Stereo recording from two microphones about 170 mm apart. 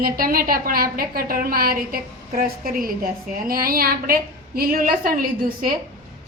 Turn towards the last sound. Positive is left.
turn(degrees=-60)  # may be behind; listen again after turning